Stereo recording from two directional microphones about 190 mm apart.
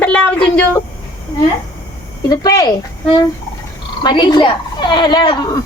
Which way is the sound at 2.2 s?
20° left (ahead or behind).